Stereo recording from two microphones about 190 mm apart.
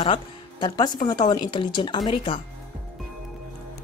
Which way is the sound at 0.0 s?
25° left (ahead or behind).